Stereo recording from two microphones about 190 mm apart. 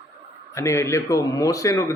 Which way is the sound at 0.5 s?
15° left (ahead or behind).